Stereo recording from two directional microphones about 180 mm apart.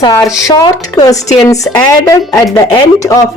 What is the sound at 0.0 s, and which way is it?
A woman's voice, 20° left (ahead or behind).